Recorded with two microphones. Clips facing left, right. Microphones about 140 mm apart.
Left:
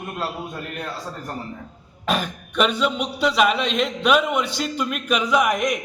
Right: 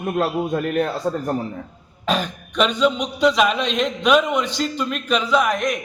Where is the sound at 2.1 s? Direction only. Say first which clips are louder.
Right 2 dB; 10° left (ahead or behind).